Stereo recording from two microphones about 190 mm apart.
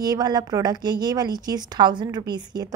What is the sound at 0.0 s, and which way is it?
A woman's voice, 20° right (ahead or behind).